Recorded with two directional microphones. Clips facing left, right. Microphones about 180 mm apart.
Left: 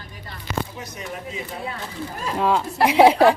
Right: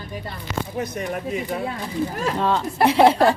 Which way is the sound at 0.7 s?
60° right (ahead or behind).